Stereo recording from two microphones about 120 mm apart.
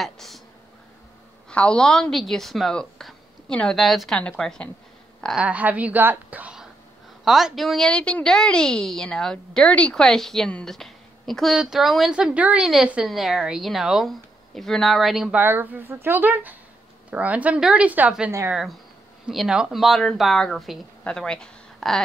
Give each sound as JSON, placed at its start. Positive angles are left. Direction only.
{"t": 0.0, "sound": "a woman's voice", "side_deg": 0}
{"t": 1.5, "sound": "a woman's voice", "side_deg": 10}
{"t": 5.4, "sound": "a woman's voice", "side_deg": -10}
{"t": 15.4, "sound": "a woman's voice", "side_deg": -15}